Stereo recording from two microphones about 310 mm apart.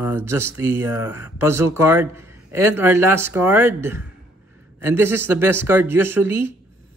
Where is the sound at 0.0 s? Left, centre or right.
Centre.